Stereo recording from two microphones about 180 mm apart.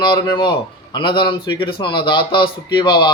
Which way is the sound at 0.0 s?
25° left (ahead or behind).